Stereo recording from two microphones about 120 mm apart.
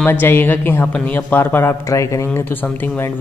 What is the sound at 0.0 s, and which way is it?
A man's voice, 15° left (ahead or behind).